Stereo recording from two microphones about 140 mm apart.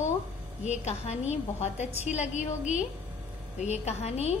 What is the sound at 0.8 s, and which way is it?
A woman's voice, 50° left (ahead or behind).